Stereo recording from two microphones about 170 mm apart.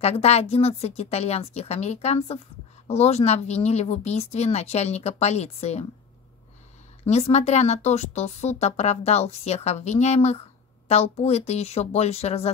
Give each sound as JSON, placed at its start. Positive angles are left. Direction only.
{"t": 0.0, "sound": "speech", "side_deg": 40}
{"t": 7.1, "sound": "speech", "side_deg": 40}